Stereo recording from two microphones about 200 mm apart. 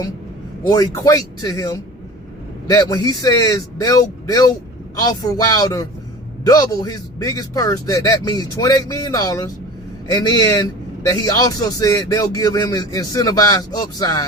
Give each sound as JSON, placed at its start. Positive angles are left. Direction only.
{"t": 0.6, "sound": "a man's voice", "side_deg": 20}